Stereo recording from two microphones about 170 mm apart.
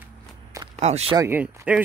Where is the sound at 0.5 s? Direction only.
20° right (ahead or behind).